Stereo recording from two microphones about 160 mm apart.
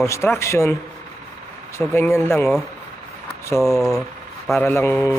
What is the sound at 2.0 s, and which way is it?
Speech, 15° left (ahead or behind).